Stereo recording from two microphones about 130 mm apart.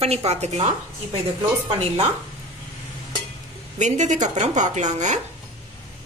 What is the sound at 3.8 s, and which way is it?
A woman's voice, 65° right (ahead or behind).